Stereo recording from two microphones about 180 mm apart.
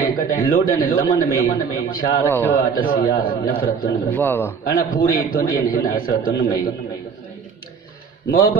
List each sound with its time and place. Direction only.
0.0 s a man's voice: 55° left (ahead or behind)
1.0 s a man's voice: 20° left (ahead or behind)
1.9 s a man's voice: 50° left (ahead or behind)
2.1 s a man's voice: 10° left (ahead or behind)
2.7 s a man's voice: 50° left (ahead or behind)
4.1 s a man's voice: 10° left (ahead or behind)
4.6 s a man's voice: 55° left (ahead or behind)
8.3 s a man's voice: 55° left (ahead or behind)